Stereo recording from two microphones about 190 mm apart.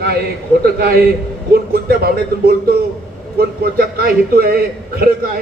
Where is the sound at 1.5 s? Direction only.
50° right (ahead or behind).